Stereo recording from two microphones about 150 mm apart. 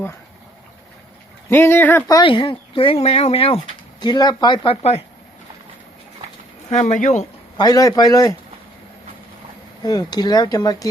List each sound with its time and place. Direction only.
1.5 s speech: 15° left (ahead or behind)
2.2 s speech: 35° left (ahead or behind)
4.0 s speech: 30° left (ahead or behind); by 5.0 s 45° left (ahead or behind)
6.7 s speech: 50° left (ahead or behind)
7.6 s speech: 25° left (ahead or behind)
9.8 s speech: 25° left (ahead or behind)